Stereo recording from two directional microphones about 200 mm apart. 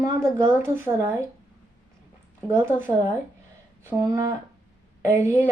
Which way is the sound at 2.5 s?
10° right (ahead or behind).